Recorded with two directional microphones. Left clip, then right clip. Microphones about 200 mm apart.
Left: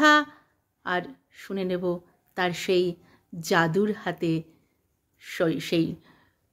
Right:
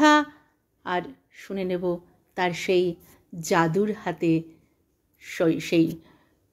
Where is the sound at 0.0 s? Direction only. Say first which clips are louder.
Even; 10° left (ahead or behind).